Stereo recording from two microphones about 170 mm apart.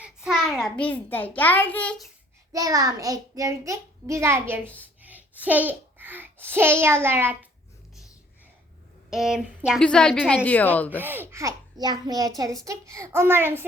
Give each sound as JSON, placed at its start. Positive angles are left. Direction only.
{"t": 0.0, "sound": "a child's voice", "side_deg": -5}
{"t": 2.5, "sound": "a child's voice", "side_deg": -20}
{"t": 9.0, "sound": "a woman's voice", "side_deg": 0}
{"t": 10.9, "sound": "a child's voice", "side_deg": -10}